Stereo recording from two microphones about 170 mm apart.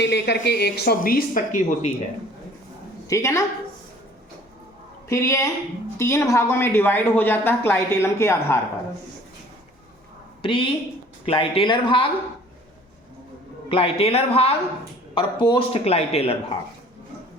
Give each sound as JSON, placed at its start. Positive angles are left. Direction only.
{"t": 0.0, "sound": "speech", "side_deg": 90}
{"t": 0.5, "sound": "speech", "side_deg": 70}
{"t": 3.1, "sound": "speech", "side_deg": 20}
{"t": 5.0, "sound": "speech", "side_deg": 15}
{"t": 10.4, "sound": "speech", "side_deg": 30}
{"t": 13.7, "sound": "speech", "side_deg": 35}